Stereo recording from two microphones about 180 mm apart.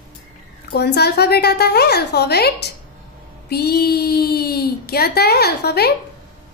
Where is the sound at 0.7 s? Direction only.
65° left (ahead or behind).